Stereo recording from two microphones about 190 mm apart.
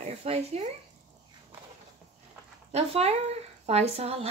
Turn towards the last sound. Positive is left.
turn(degrees=-30)  # may be behind; listen again after turning